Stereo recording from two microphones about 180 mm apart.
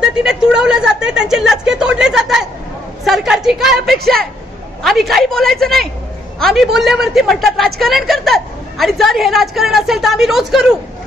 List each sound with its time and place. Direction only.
0.2 s a woman's voice: 5° right (ahead or behind)